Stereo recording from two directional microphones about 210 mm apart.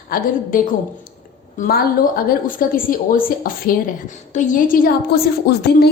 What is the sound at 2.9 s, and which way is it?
A woman's voice, 40° left (ahead or behind).